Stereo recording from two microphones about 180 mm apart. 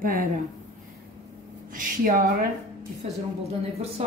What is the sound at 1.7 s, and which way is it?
Speech, 50° right (ahead or behind).